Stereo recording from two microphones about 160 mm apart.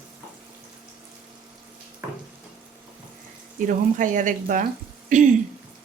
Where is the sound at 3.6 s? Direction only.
55° right (ahead or behind).